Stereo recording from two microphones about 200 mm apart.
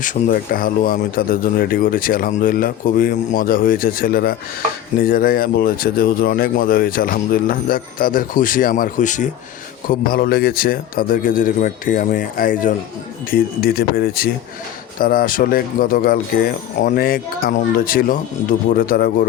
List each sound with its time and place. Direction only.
0.0 s speech: 40° left (ahead or behind)